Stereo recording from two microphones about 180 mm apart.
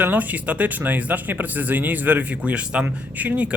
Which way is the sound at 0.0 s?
10° right (ahead or behind).